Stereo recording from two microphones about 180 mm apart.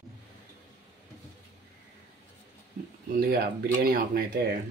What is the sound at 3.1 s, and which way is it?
Speech, 55° right (ahead or behind).